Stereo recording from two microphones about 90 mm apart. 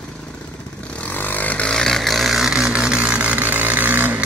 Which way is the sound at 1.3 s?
20° left (ahead or behind).